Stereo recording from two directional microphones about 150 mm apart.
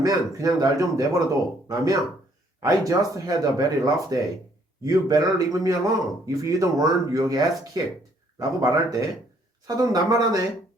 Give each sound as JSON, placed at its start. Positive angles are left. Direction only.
{"t": 0.0, "sound": "speech", "side_deg": -25}